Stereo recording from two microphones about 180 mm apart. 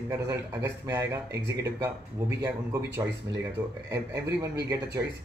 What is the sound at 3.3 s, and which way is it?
A man's voice, 15° right (ahead or behind).